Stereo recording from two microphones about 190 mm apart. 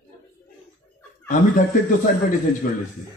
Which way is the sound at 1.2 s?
45° left (ahead or behind).